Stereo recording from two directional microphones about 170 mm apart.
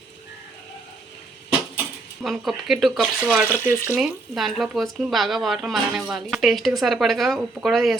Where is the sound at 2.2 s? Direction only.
Centre (ahead or behind).